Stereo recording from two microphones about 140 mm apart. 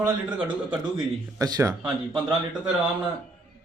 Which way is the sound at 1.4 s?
25° right (ahead or behind).